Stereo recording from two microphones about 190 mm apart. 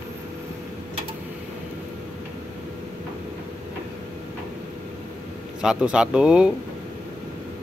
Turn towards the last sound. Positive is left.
turn(degrees=-5)  # may be behind; listen again after turning